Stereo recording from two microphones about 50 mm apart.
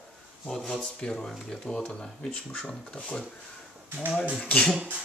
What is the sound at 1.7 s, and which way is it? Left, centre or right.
Speech, left.